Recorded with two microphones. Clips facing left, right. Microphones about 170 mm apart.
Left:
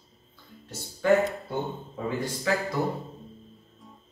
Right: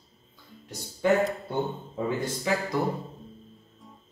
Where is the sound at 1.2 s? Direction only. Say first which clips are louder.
Right 1 dB; centre (ahead or behind).